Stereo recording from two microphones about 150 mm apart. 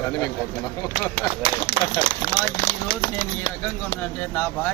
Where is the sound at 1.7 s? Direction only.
90° left.